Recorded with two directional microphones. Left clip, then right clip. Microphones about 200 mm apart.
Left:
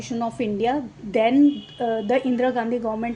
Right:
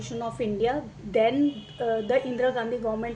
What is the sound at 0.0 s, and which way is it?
A woman's voice, 35° left (ahead or behind).